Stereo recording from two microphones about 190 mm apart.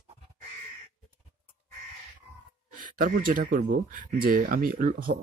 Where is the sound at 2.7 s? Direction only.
45° right (ahead or behind).